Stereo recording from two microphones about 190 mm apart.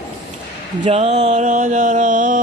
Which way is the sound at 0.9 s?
35° right (ahead or behind).